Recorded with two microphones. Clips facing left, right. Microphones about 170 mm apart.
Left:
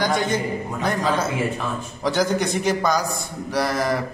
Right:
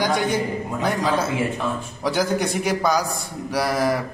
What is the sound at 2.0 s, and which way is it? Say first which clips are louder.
Speech: left 1 dB; 10° right (ahead or behind).